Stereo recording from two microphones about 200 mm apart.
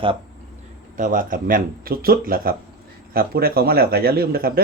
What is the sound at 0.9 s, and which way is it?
Speech, 40° right (ahead or behind).